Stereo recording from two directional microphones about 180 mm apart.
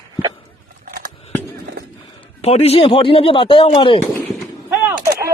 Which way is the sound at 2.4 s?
35° left (ahead or behind).